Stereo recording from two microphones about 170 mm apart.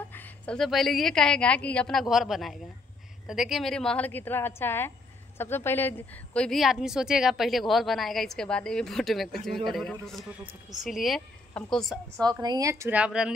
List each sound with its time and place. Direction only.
0.1 s a woman's voice: 10° left (ahead or behind)
12.3 s speech: 25° right (ahead or behind); by 13.3 s 5° right (ahead or behind)